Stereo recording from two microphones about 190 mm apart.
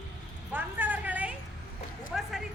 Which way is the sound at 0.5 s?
10° right (ahead or behind).